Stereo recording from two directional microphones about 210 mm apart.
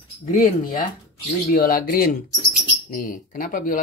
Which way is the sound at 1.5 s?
45° left (ahead or behind).